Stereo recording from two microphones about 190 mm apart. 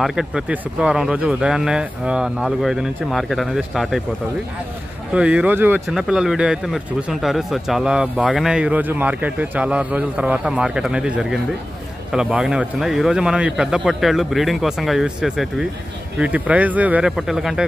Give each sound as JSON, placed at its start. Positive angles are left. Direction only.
{"t": 0.0, "sound": "speech", "side_deg": 0}
{"t": 5.1, "sound": "speech", "side_deg": -5}